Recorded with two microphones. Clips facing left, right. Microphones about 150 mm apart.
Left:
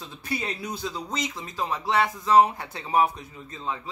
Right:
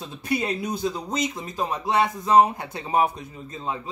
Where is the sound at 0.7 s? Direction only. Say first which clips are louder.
Right 5 dB; 15° right (ahead or behind).